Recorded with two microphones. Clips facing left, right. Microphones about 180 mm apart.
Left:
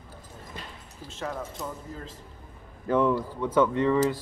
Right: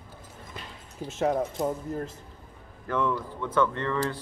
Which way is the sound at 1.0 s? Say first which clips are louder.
Right 8 dB; 45° right (ahead or behind).